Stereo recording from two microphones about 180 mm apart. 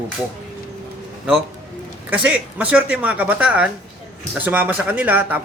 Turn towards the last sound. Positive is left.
turn(degrees=-10)  # may be behind; listen again after turning